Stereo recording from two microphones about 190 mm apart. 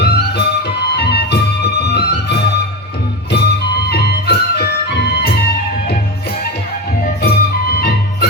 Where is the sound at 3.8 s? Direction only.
60° left (ahead or behind).